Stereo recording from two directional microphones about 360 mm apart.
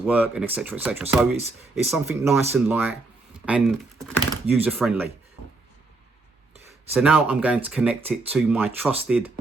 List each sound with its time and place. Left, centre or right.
0.0 s speech: centre
6.9 s speech: centre